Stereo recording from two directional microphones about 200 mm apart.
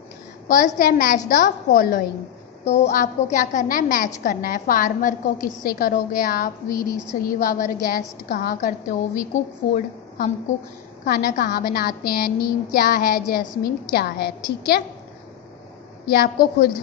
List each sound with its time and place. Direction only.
0.5 s a woman's voice: 45° left (ahead or behind)
16.1 s a woman's voice: 50° left (ahead or behind)